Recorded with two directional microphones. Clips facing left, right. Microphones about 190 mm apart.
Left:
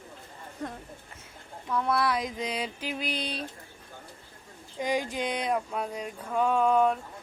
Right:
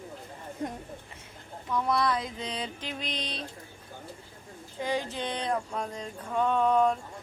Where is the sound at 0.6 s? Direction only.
20° right (ahead or behind).